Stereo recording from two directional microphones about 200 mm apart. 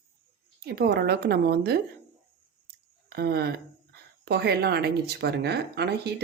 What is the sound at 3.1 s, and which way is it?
A woman's voice, 55° right (ahead or behind).